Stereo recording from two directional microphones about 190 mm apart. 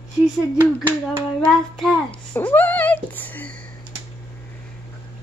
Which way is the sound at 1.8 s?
10° left (ahead or behind).